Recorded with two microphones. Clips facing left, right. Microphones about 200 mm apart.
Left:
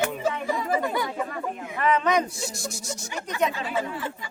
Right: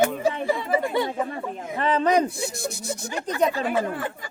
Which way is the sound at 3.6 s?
50° right (ahead or behind).